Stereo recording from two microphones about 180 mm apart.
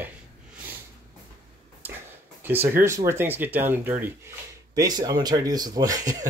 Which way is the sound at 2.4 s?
10° right (ahead or behind).